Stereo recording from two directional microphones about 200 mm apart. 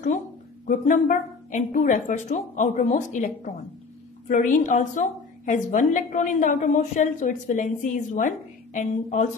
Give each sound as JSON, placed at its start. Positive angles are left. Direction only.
{"t": 0.7, "sound": "a woman's voice", "side_deg": 40}
{"t": 4.3, "sound": "a woman's voice", "side_deg": 40}